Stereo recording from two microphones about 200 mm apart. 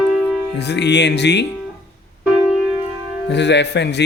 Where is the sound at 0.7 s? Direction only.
60° left (ahead or behind).